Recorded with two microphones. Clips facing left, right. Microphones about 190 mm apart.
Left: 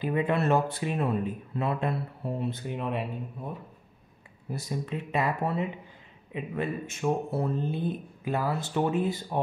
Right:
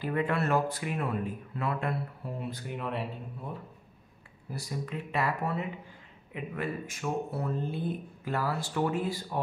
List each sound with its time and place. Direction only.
0.0 s speech: 20° left (ahead or behind)
4.5 s speech: 25° left (ahead or behind)